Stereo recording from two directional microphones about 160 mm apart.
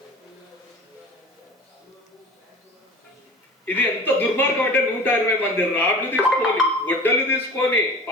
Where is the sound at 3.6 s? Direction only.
10° left (ahead or behind).